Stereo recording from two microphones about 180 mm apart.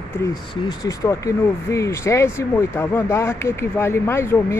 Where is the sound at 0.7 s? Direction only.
15° left (ahead or behind).